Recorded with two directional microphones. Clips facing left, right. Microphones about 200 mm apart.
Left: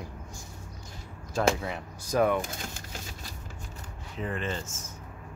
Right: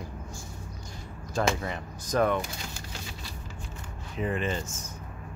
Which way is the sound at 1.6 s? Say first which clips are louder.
Right 1 dB; 5° left (ahead or behind).